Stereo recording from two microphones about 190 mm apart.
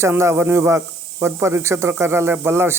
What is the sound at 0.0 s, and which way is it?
Speech, 15° right (ahead or behind).